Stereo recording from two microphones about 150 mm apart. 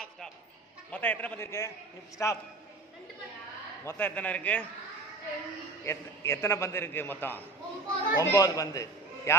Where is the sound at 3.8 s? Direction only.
10° left (ahead or behind).